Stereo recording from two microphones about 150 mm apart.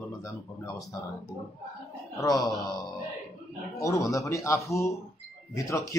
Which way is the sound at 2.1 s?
25° left (ahead or behind).